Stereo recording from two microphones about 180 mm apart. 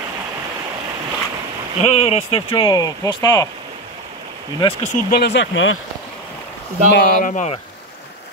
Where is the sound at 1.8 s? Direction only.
35° left (ahead or behind); by 3.5 s 20° left (ahead or behind).